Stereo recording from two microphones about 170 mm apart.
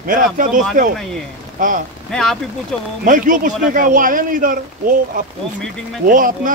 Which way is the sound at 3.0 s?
50° right (ahead or behind).